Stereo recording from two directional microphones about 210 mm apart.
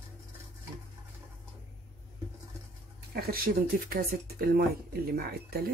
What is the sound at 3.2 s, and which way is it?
Speech, 45° right (ahead or behind).